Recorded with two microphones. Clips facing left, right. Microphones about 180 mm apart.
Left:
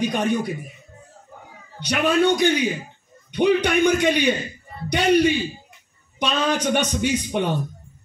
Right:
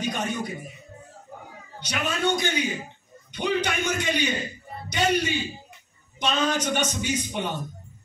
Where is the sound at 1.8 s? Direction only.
60° left (ahead or behind).